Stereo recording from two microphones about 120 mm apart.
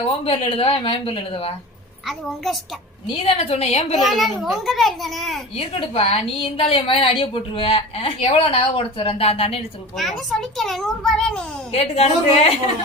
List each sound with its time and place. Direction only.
0.3 s a woman's voice: 50° left (ahead or behind)
2.0 s a child's voice: centre (ahead or behind)
3.2 s a woman's voice: 55° left (ahead or behind)
3.9 s a child's voice: centre (ahead or behind)
5.5 s a woman's voice: 55° left (ahead or behind)
10.0 s a child's voice: centre (ahead or behind)
11.7 s a woman's voice: 60° left (ahead or behind)